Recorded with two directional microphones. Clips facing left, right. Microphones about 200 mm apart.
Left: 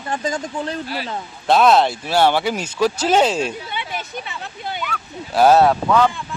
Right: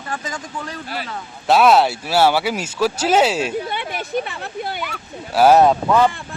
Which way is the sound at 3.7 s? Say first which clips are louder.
Right 4 dB; 55° right (ahead or behind).